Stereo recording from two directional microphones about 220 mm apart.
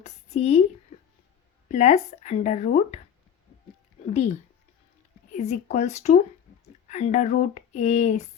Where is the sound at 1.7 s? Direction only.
30° left (ahead or behind).